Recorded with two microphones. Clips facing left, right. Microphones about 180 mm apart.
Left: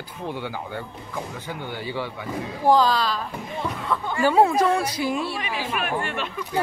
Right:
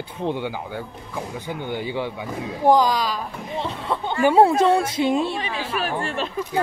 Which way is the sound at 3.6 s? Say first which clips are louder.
Right 1 dB; 30° right (ahead or behind).